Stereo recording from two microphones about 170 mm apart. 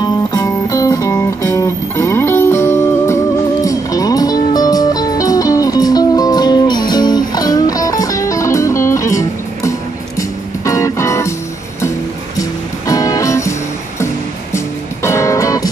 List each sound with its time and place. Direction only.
0.0 s music: 20° left (ahead or behind)
12.4 s music: 20° left (ahead or behind)
15.0 s music: 15° left (ahead or behind)